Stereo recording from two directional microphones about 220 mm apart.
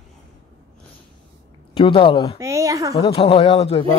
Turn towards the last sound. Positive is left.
turn(degrees=25)  # may be behind; listen again after turning